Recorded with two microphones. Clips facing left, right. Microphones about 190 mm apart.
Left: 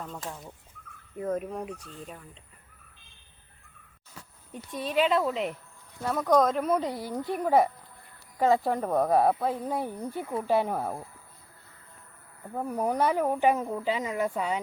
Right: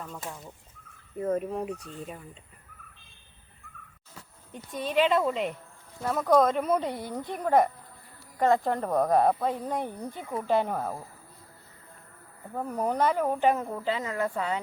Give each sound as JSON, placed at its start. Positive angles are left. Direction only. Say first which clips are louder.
{"t": 0.1, "sound": "speech", "louder": "left 1 dB", "side_deg": 0}
{"t": 4.5, "sound": "speech", "louder": "right 1 dB", "side_deg": 0}
{"t": 12.5, "sound": "speech", "louder": "even", "side_deg": 10}